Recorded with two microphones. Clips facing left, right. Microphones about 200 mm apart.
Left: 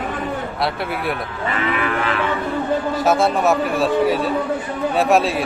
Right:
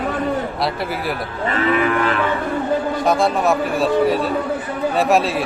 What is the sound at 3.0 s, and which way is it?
A man's voice, centre (ahead or behind).